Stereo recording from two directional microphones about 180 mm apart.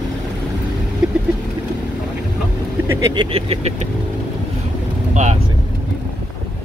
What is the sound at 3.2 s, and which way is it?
Vehicle, 30° right (ahead or behind).